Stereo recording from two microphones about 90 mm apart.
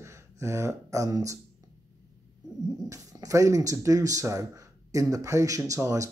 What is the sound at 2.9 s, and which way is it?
Speech, 35° right (ahead or behind).